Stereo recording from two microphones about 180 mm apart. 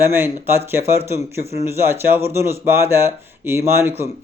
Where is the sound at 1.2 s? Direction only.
35° left (ahead or behind).